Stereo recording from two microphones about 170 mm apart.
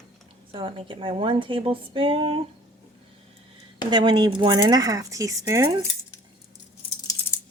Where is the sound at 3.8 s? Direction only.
25° right (ahead or behind).